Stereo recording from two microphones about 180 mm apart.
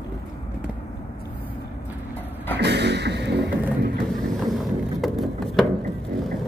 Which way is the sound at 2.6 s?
70° right (ahead or behind).